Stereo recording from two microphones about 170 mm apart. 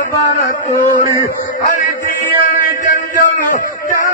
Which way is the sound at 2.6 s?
50° left (ahead or behind).